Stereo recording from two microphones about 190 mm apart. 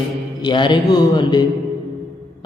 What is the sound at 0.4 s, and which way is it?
A man's voice, 25° left (ahead or behind).